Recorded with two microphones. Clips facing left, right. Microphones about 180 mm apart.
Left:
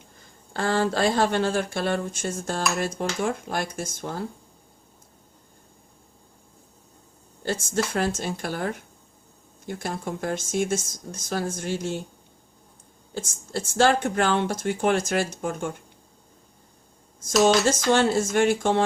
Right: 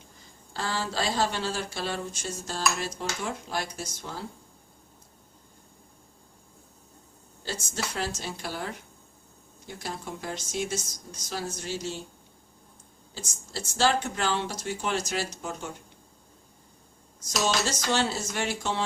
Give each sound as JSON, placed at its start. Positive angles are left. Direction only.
{"t": 0.5, "sound": "speech", "side_deg": 55}
{"t": 7.4, "sound": "speech", "side_deg": 55}
{"t": 13.1, "sound": "speech", "side_deg": 50}
{"t": 17.2, "sound": "speech", "side_deg": 50}